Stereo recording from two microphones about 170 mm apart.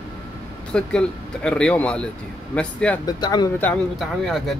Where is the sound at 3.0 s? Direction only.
25° left (ahead or behind).